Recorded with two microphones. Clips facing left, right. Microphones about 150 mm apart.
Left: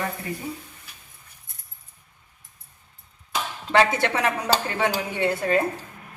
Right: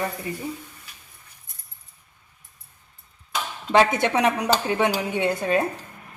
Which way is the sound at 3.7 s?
20° right (ahead or behind).